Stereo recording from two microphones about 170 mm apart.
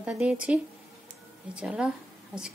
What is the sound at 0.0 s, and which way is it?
A woman's voice, 5° right (ahead or behind).